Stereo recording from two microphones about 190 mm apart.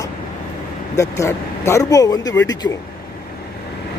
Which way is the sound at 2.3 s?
75° left (ahead or behind).